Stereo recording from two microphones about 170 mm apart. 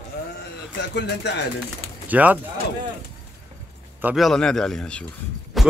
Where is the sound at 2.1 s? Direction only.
10° right (ahead or behind).